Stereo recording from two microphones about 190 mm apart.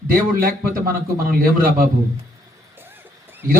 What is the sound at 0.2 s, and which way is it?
Speech, 50° right (ahead or behind).